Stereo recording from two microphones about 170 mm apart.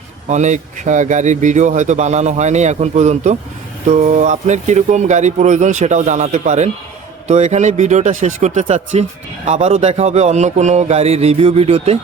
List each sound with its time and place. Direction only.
0.3 s speech: 45° right (ahead or behind)
9.5 s music: 35° right (ahead or behind)